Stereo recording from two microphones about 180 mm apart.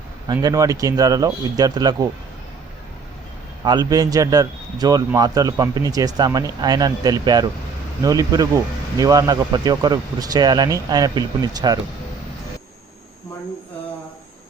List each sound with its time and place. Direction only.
0.3 s speech: 20° right (ahead or behind)
3.6 s speech: 20° right (ahead or behind)